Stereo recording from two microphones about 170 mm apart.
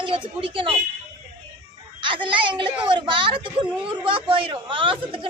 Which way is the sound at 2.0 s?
30° right (ahead or behind).